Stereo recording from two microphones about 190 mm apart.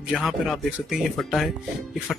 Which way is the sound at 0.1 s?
Centre (ahead or behind).